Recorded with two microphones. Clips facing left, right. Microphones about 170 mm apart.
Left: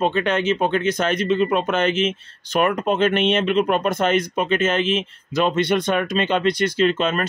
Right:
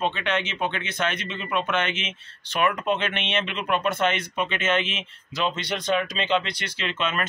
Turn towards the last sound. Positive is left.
turn(degrees=40)  # may be behind; listen again after turning